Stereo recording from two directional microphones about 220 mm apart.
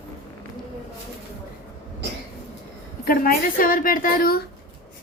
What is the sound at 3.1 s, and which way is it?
A woman's voice, 40° left (ahead or behind).